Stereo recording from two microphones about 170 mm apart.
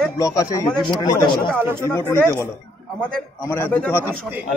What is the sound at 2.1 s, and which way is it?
Speech, 15° left (ahead or behind).